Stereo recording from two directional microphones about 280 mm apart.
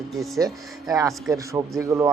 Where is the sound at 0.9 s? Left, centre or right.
Centre.